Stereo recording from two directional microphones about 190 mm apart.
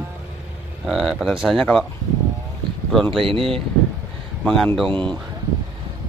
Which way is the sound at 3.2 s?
30° right (ahead or behind).